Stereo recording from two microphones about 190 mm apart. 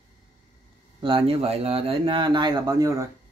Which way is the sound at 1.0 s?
30° right (ahead or behind).